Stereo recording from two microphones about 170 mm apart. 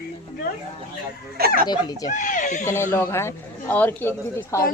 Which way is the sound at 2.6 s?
15° left (ahead or behind).